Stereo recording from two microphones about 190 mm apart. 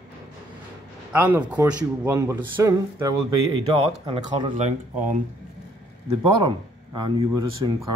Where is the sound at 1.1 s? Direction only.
10° right (ahead or behind).